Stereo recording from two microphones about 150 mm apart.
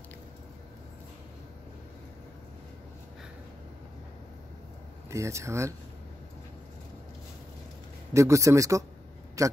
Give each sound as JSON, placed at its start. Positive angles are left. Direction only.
{"t": 5.1, "sound": "speech", "side_deg": -20}
{"t": 8.1, "sound": "speech", "side_deg": -20}